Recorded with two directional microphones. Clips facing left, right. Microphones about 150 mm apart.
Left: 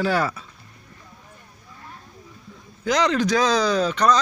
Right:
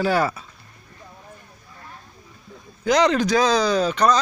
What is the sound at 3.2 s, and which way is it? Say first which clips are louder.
Speech: right 1 dB; 5° right (ahead or behind).